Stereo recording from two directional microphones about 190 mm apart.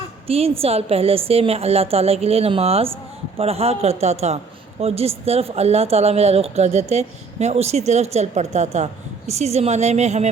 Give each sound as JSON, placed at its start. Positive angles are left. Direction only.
{"t": 0.3, "sound": "speech", "side_deg": -30}